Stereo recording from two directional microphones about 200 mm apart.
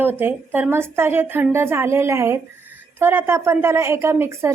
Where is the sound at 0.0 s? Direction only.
10° right (ahead or behind).